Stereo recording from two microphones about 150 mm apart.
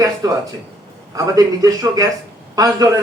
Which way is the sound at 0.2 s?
25° right (ahead or behind).